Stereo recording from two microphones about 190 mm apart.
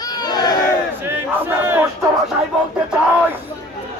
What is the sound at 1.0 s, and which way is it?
Crowd, 10° right (ahead or behind).